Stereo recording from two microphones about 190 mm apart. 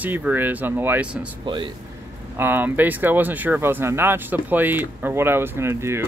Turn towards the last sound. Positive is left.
turn(degrees=-15)  # may be behind; listen again after turning